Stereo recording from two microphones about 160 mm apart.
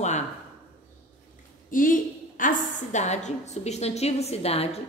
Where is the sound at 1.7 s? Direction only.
55° left (ahead or behind).